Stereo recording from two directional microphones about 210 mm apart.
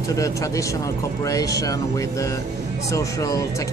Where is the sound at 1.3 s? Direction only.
15° left (ahead or behind).